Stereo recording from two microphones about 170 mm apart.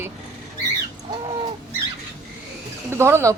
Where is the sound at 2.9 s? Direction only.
15° right (ahead or behind).